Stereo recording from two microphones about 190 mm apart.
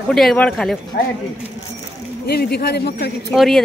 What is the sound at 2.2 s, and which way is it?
Speech, 55° left (ahead or behind).